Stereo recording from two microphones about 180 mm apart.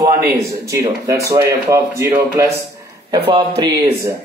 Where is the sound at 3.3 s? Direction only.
25° right (ahead or behind).